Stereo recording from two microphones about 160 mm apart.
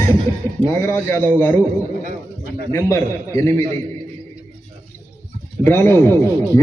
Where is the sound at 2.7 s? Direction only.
15° left (ahead or behind).